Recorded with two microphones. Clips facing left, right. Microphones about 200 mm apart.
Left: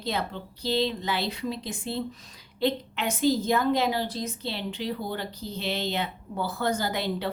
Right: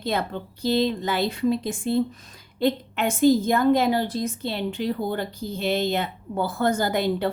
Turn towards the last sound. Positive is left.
turn(degrees=-50)  # may be behind; listen again after turning